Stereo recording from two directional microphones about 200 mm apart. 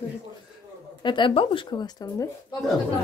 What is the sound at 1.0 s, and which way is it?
A woman's voice, 25° left (ahead or behind).